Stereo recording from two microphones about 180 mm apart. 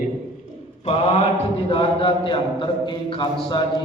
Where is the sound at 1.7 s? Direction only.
30° left (ahead or behind).